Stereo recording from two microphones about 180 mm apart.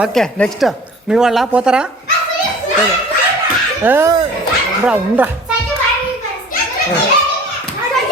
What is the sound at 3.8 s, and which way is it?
A woman's voice, 10° right (ahead or behind).